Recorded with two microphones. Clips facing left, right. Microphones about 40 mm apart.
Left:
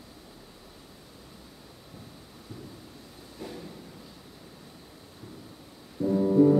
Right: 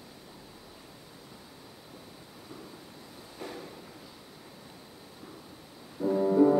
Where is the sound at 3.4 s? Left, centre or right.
Centre.